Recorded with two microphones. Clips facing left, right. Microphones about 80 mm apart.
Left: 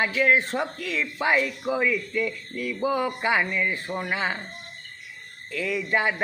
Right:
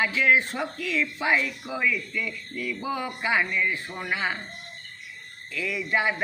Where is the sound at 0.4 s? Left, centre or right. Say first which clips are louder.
Left 2 dB; left.